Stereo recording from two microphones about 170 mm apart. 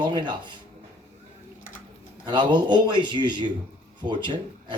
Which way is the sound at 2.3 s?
25° right (ahead or behind).